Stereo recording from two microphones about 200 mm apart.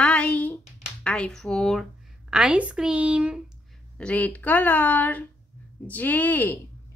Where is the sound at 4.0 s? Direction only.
5° left (ahead or behind).